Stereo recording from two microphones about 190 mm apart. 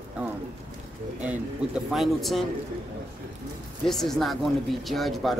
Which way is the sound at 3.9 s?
Centre (ahead or behind).